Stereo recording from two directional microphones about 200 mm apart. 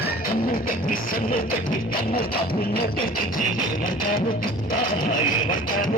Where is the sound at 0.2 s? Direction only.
45° left (ahead or behind).